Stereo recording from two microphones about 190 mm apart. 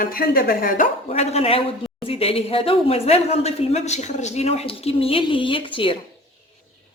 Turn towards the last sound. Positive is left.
turn(degrees=25)  # may be behind; listen again after turning